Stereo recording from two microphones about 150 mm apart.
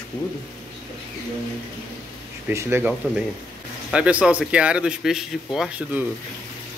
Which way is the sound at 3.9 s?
10° right (ahead or behind).